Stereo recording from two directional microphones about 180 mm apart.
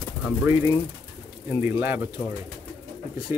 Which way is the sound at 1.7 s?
10° right (ahead or behind).